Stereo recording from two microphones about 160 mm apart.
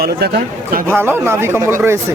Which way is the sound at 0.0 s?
80° right.